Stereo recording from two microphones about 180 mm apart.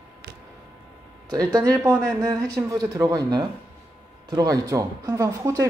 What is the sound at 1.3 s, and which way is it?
Speech, 20° right (ahead or behind).